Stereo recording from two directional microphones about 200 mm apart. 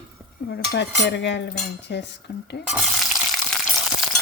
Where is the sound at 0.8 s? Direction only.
60° left (ahead or behind).